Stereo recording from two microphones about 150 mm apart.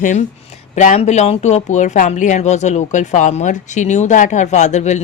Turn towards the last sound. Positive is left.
turn(degrees=50)  # may be behind; listen again after turning